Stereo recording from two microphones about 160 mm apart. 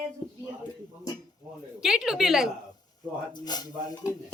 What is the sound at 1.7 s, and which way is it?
Speech, 5° right (ahead or behind).